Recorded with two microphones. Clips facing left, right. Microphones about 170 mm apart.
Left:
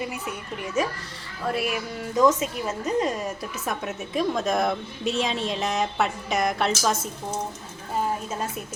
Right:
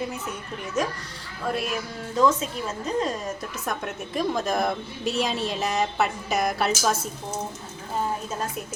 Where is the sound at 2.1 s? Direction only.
15° left (ahead or behind); by 7.0 s 5° right (ahead or behind).